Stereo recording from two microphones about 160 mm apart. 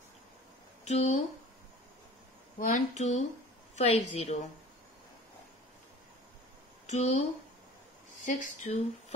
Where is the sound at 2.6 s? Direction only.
50° left (ahead or behind).